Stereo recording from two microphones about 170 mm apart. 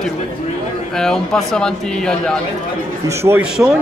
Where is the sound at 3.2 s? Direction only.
10° right (ahead or behind).